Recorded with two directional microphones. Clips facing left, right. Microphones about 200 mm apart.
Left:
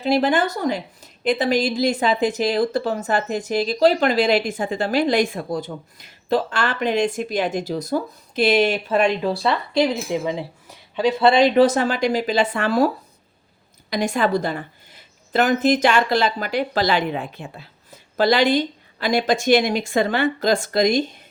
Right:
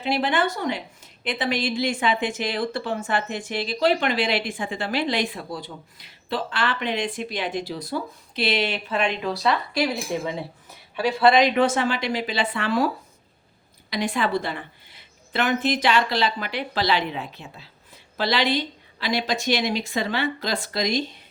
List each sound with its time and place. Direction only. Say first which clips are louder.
0.0 s a woman's voice: left 5 dB; 40° left (ahead or behind)
13.9 s a woman's voice: left 4 dB; 45° left (ahead or behind)